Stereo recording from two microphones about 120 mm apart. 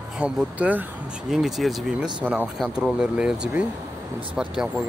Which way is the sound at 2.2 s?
15° right (ahead or behind).